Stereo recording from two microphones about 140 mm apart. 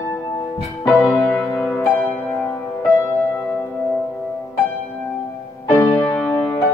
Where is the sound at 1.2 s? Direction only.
10° left (ahead or behind).